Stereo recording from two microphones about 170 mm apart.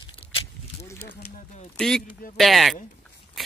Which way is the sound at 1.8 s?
5° left (ahead or behind).